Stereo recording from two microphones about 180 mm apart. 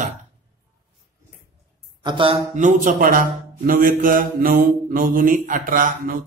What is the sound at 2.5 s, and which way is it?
A man's voice, 45° right (ahead or behind).